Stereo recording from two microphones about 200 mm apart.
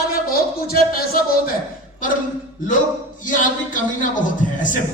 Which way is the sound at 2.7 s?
40° left (ahead or behind).